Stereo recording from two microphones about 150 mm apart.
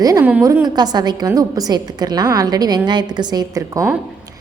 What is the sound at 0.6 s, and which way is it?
A woman's voice, 25° right (ahead or behind).